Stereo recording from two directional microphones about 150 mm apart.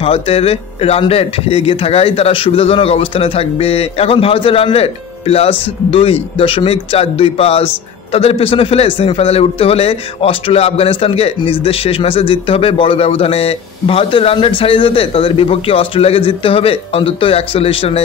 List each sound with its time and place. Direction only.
0.0 s speech: 40° left (ahead or behind)